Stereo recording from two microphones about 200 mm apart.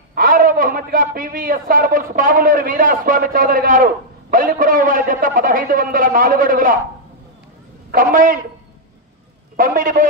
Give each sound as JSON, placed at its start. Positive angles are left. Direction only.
{"t": 0.1, "sound": "a man's voice", "side_deg": -45}
{"t": 7.9, "sound": "a man's voice", "side_deg": -45}
{"t": 9.6, "sound": "a man's voice", "side_deg": -45}